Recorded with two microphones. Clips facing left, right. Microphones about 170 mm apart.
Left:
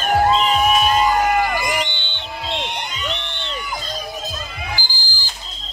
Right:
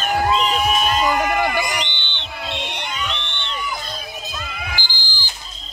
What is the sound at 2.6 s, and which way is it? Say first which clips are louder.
Crowd: left 2 dB; 50° left (ahead or behind).